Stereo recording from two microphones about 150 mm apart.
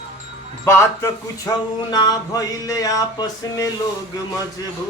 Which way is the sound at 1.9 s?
25° left (ahead or behind).